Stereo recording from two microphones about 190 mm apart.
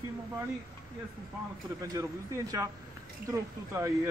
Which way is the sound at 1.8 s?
15° right (ahead or behind).